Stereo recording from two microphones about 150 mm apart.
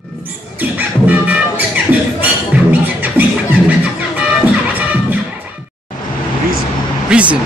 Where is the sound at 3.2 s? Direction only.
10° right (ahead or behind).